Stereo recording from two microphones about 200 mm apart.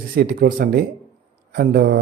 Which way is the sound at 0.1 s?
50° right (ahead or behind).